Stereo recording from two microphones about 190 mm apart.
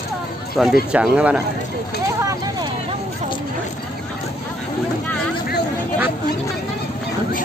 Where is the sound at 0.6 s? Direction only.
Centre (ahead or behind).